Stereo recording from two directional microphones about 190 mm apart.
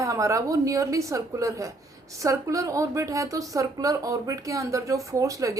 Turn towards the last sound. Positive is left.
turn(degrees=-15)  # may be behind; listen again after turning